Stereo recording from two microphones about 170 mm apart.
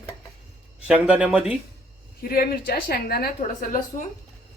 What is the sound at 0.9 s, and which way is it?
Speech, 10° right (ahead or behind).